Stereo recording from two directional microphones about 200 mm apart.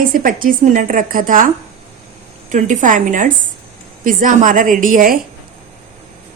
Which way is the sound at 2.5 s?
40° right (ahead or behind).